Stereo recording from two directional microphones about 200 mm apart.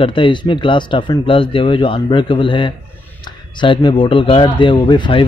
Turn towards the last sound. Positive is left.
turn(degrees=25)  # may be behind; listen again after turning